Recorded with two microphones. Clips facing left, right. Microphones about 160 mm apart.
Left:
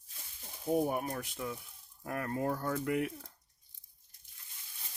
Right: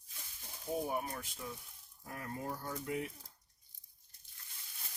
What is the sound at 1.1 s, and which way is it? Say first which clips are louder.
Speech: left 6 dB; 65° left (ahead or behind).